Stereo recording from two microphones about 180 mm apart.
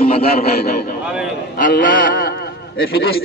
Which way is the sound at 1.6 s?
55° left (ahead or behind).